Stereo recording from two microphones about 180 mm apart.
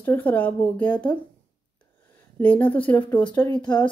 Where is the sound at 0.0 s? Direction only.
10° left (ahead or behind).